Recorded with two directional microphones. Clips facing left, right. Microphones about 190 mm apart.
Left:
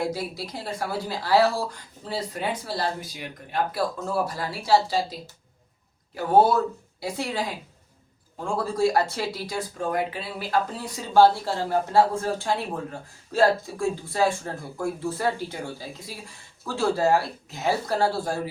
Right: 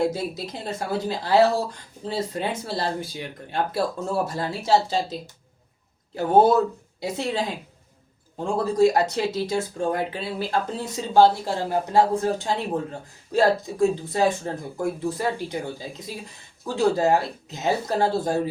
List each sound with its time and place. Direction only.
0.0 s speech: 25° right (ahead or behind)
7.0 s speech: 25° right (ahead or behind)